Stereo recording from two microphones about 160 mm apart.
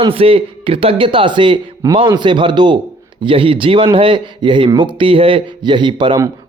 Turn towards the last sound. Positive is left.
turn(degrees=-30)  # may be behind; listen again after turning